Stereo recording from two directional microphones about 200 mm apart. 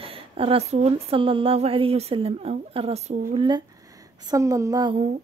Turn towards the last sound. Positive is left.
turn(degrees=-35)  # may be behind; listen again after turning